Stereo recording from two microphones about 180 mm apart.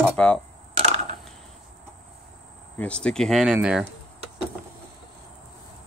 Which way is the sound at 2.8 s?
5° left (ahead or behind).